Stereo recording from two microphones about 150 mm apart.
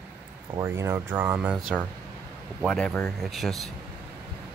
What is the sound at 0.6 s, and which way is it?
Speech, 15° right (ahead or behind).